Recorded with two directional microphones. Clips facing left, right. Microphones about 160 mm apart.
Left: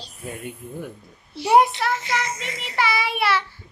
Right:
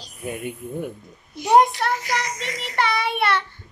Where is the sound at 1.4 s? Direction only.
5° left (ahead or behind).